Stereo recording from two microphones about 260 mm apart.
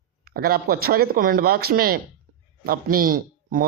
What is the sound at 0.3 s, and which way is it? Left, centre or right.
Speech, right.